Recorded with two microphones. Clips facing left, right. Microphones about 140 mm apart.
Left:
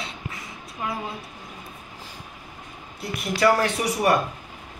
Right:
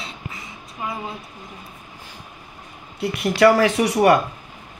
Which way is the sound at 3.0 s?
75° right (ahead or behind).